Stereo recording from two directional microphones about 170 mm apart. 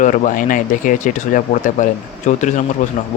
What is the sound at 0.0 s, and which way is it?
Speech, 50° left (ahead or behind).